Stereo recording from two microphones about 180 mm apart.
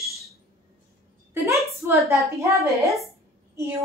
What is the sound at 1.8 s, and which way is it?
Speech, 15° right (ahead or behind).